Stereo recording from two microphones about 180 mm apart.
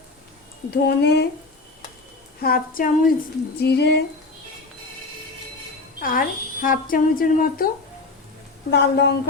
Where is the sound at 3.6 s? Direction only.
65° left (ahead or behind).